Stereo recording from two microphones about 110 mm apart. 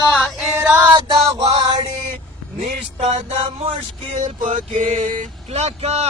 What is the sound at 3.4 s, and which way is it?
Male singing, 55° right (ahead or behind).